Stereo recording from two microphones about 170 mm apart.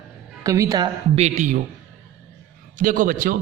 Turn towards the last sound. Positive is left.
turn(degrees=-55)  # may be behind; listen again after turning